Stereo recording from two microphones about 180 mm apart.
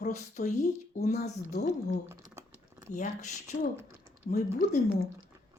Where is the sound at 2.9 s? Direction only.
45° left (ahead or behind).